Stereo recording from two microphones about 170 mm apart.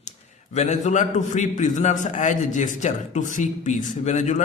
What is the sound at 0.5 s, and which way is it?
A man's voice, 45° left (ahead or behind).